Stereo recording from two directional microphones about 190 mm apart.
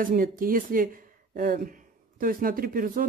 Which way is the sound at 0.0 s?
45° right (ahead or behind).